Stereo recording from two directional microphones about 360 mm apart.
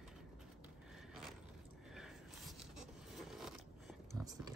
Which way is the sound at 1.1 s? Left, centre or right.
Centre.